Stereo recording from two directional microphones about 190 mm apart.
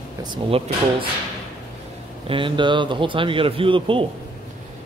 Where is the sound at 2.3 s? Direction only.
25° right (ahead or behind).